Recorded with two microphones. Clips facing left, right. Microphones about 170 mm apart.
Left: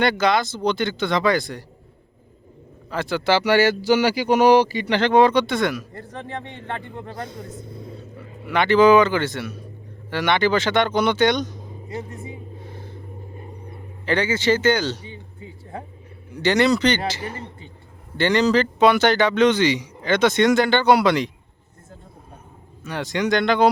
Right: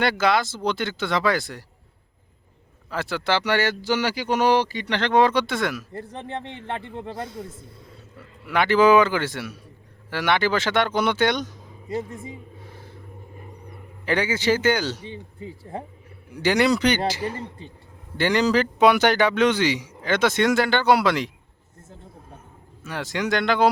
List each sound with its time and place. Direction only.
0.0 s speech: 5° right (ahead or behind)
2.9 s speech: 5° right (ahead or behind)
6.0 s speech: 25° right (ahead or behind)
7.2 s speech: 5° right (ahead or behind)
8.1 s speech: 60° left (ahead or behind)
8.4 s speech: 5° right (ahead or behind)
12.6 s a sound: 5° right (ahead or behind)
13.4 s a sound: 30° left (ahead or behind)
14.0 s speech: 10° right (ahead or behind)
15.0 s speech: 35° right (ahead or behind)
16.3 s speech: 10° right (ahead or behind)
22.8 s speech: 5° right (ahead or behind)